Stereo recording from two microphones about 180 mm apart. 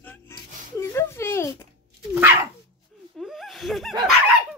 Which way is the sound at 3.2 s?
Centre (ahead or behind).